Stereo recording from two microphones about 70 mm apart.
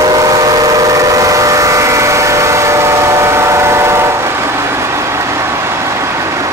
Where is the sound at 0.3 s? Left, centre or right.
Right.